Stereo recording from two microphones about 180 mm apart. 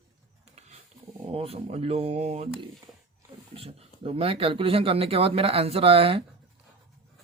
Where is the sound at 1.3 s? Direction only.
30° right (ahead or behind).